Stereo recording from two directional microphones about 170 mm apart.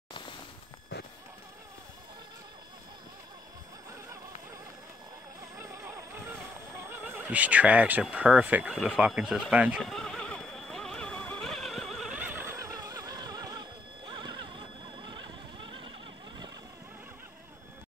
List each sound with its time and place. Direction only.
5.6 s music: 15° right (ahead or behind)
6.9 s neigh: 10° right (ahead or behind); by 15.9 s 30° right (ahead or behind)